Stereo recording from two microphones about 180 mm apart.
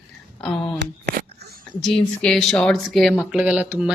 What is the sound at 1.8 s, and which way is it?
Speech, centre (ahead or behind).